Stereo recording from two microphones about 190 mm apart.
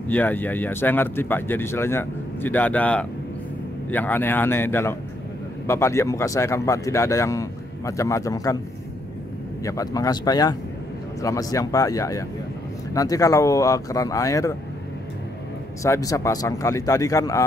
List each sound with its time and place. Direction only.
0.1 s speech: 10° left (ahead or behind)
9.7 s speech: 20° left (ahead or behind)
15.8 s speech: 15° left (ahead or behind)